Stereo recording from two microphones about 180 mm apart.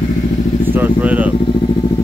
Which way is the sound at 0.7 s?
10° right (ahead or behind).